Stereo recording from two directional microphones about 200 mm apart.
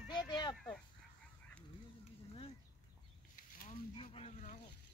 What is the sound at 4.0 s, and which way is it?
Speech, 30° left (ahead or behind).